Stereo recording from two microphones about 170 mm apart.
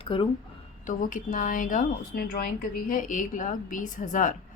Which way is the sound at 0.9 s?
50° left (ahead or behind).